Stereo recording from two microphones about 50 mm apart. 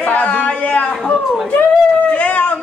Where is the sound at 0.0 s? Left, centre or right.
Left.